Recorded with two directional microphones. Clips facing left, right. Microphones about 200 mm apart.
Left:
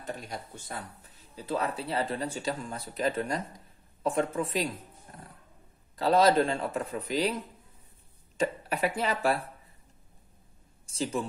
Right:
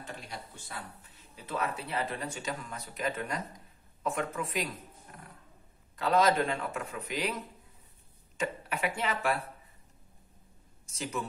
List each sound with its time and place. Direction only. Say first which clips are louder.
0.0 s speech: left 5 dB; 45° left (ahead or behind)
5.9 s speech: left 4 dB; 35° left (ahead or behind)
10.9 s speech: left 5 dB; 30° left (ahead or behind)